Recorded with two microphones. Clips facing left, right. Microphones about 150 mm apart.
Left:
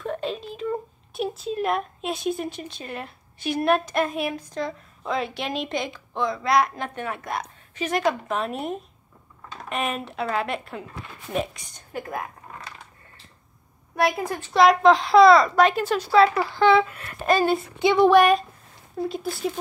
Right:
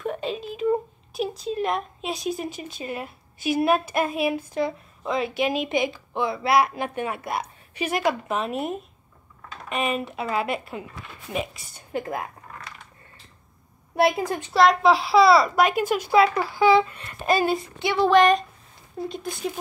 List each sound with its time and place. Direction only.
0.0 s a woman's voice: 5° right (ahead or behind)
14.5 s a woman's voice: centre (ahead or behind)
16.7 s speech: 5° left (ahead or behind)
17.3 s speech: 5° right (ahead or behind)
17.7 s a sound: 15° left (ahead or behind)
19.0 s speech: 5° right (ahead or behind)